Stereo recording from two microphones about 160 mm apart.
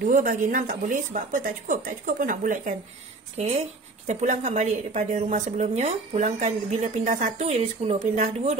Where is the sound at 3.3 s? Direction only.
40° right (ahead or behind).